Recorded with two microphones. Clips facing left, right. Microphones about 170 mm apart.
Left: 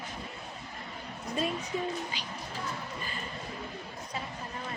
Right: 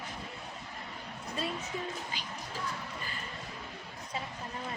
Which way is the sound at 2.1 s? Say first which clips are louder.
Left 1 dB; 50° right (ahead or behind).